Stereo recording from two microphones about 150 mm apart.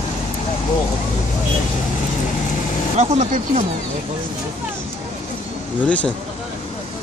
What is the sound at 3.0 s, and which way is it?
Speech, 50° right (ahead or behind).